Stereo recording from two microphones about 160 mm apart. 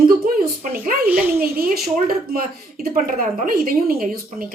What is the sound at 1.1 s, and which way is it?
Speech, 10° right (ahead or behind).